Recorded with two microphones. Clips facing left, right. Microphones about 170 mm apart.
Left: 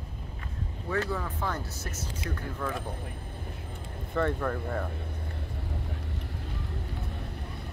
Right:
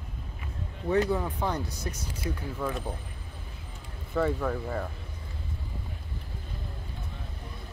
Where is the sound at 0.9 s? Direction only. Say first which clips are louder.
Right 5 dB; 20° right (ahead or behind).